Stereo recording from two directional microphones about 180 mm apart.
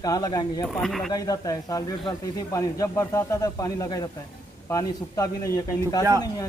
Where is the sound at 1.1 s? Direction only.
20° left (ahead or behind).